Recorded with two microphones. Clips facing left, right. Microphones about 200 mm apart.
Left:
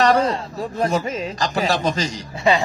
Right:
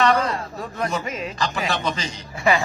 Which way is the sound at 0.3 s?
30° left (ahead or behind).